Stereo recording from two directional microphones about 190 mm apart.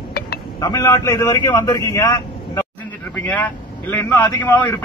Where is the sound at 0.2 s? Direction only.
55° left (ahead or behind).